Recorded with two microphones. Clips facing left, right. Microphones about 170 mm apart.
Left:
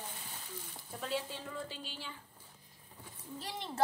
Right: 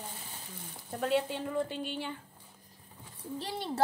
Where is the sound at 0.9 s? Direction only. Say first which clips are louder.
Right 9 dB; 60° right (ahead or behind).